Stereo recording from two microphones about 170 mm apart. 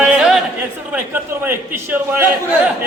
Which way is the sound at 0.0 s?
5° right (ahead or behind).